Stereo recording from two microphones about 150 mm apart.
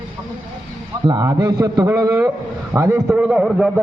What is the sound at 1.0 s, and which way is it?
A man's voice, 25° right (ahead or behind).